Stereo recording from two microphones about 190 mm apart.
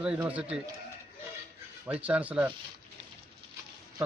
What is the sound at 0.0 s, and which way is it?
Speech, 5° right (ahead or behind).